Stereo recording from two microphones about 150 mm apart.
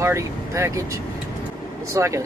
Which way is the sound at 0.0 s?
20° right (ahead or behind).